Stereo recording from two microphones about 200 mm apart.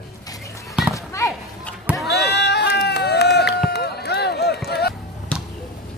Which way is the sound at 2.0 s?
55° left (ahead or behind).